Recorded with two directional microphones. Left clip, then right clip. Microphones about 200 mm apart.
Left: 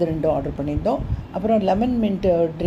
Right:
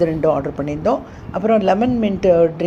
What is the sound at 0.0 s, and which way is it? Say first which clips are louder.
Speech: right 4 dB; 10° right (ahead or behind).